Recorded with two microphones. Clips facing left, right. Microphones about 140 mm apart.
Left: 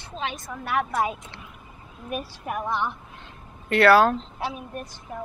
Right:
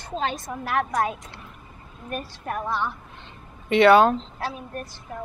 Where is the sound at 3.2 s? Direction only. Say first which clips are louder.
Even; centre (ahead or behind).